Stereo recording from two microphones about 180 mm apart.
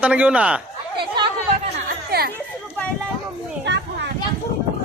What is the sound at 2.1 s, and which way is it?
Chatter, 65° right (ahead or behind).